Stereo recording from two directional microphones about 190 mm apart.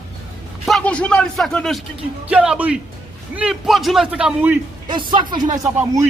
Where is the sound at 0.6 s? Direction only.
5° left (ahead or behind).